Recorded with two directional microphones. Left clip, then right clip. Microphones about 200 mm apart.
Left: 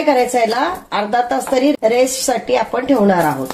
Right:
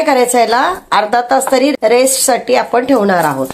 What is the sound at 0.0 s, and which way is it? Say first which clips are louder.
Speech: right 3 dB; 35° right (ahead or behind).